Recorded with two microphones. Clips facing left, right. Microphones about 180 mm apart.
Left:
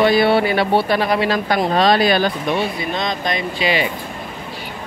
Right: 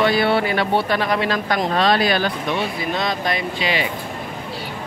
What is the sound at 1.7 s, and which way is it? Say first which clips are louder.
Speech: left 3 dB; 35° left (ahead or behind).